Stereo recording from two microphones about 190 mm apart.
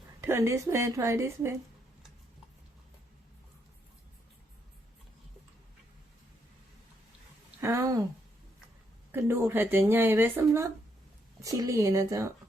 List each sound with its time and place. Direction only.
0.2 s speech: 15° right (ahead or behind)
7.6 s a sound: 15° right (ahead or behind)
9.1 s speech: 15° right (ahead or behind)